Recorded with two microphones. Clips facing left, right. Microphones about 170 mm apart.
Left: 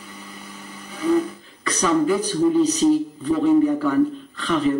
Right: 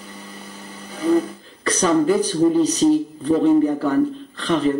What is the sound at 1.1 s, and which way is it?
Speech, 35° right (ahead or behind).